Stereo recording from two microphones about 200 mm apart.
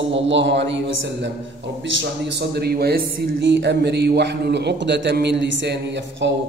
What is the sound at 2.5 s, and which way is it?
A man's voice, 50° right (ahead or behind).